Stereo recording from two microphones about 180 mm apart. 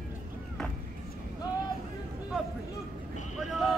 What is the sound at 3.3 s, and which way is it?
Vehicle, centre (ahead or behind).